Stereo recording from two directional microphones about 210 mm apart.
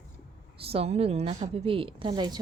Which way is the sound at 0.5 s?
25° right (ahead or behind).